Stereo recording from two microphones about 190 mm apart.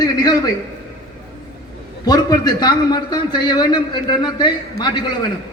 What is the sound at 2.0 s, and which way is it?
A man's voice, 20° left (ahead or behind).